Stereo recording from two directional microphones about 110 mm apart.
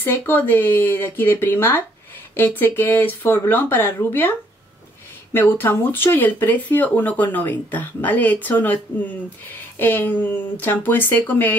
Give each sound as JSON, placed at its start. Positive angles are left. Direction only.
{"t": 0.0, "sound": "speech", "side_deg": 20}
{"t": 9.8, "sound": "speech", "side_deg": 20}